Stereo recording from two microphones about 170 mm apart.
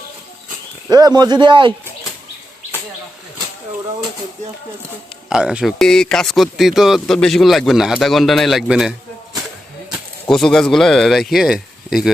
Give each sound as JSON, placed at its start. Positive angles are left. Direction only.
{"t": 0.9, "sound": "speech", "side_deg": -25}
{"t": 5.3, "sound": "speech", "side_deg": -5}